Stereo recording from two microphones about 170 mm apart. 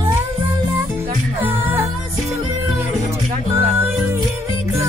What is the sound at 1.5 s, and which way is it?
Music, 15° right (ahead or behind).